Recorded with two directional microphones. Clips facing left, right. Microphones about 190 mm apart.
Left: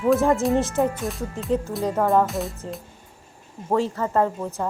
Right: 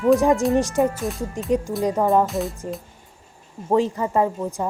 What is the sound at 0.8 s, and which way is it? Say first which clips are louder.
Speech: right 2 dB; centre (ahead or behind).